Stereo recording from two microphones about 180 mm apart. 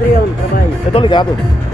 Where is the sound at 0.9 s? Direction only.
25° left (ahead or behind).